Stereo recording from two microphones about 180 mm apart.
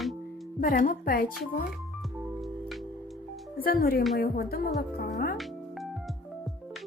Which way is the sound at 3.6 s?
55° left (ahead or behind).